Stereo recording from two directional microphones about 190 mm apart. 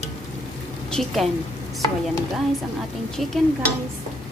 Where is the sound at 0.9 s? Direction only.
Centre (ahead or behind).